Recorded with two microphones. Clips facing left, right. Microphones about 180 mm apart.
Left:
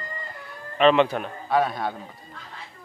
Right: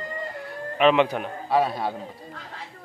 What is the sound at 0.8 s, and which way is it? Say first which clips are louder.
A man's voice: left 1 dB; 10° right (ahead or behind).